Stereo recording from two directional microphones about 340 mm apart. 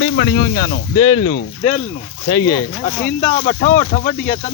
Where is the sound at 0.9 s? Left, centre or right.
Centre.